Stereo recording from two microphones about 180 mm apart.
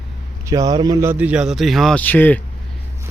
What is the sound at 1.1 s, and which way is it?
Speech, 10° right (ahead or behind).